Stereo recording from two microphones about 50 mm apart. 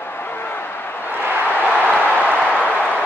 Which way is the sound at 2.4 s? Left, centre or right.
Left.